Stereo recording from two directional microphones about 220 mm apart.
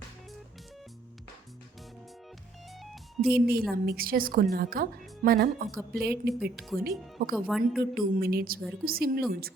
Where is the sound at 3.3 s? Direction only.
45° right (ahead or behind).